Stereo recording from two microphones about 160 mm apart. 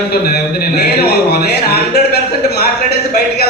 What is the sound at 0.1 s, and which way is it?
Speech, 80° left.